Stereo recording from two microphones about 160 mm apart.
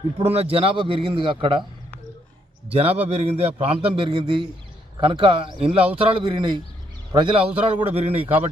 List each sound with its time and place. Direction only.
0.2 s a man's voice: 40° right (ahead or behind)
2.6 s a man's voice: 40° right (ahead or behind)